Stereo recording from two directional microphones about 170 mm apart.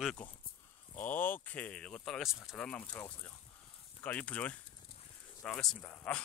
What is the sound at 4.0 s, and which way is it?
Speech, 10° left (ahead or behind).